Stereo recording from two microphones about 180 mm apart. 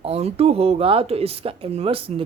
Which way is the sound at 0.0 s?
35° right (ahead or behind).